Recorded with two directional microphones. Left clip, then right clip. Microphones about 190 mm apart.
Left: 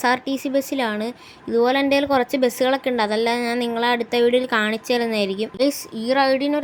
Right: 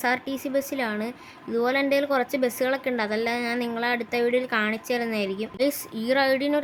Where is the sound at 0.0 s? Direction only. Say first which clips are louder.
Left 5 dB; 20° left (ahead or behind).